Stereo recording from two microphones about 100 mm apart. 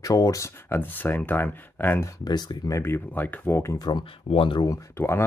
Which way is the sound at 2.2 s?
45° left (ahead or behind).